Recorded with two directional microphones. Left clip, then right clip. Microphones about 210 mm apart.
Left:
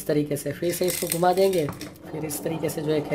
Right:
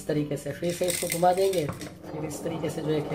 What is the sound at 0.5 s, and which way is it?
Speech, 45° left (ahead or behind).